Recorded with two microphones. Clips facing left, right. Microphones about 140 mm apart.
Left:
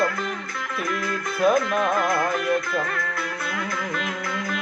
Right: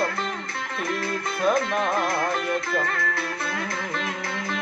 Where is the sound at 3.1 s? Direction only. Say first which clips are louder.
Even; 30° right (ahead or behind).